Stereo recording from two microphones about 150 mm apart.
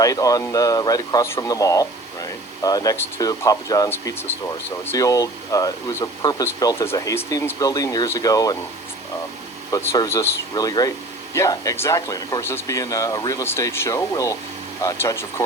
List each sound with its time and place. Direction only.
0.0 s speech: 25° left (ahead or behind)
9.7 s speech: 20° left (ahead or behind)